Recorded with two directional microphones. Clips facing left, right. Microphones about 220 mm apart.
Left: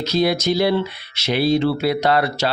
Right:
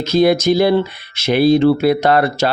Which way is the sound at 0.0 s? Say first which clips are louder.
Right 6 dB; 50° right (ahead or behind).